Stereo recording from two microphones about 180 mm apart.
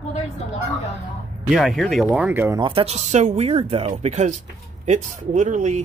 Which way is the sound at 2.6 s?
30° right (ahead or behind).